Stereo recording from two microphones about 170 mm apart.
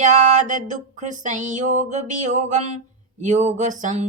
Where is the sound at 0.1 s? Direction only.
45° right (ahead or behind).